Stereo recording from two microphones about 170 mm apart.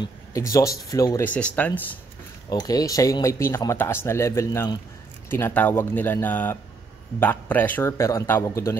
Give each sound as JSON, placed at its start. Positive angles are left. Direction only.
{"t": 0.0, "sound": "speech", "side_deg": 20}
{"t": 2.5, "sound": "speech", "side_deg": 20}